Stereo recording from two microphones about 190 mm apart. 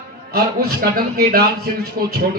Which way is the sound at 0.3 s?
50° right (ahead or behind).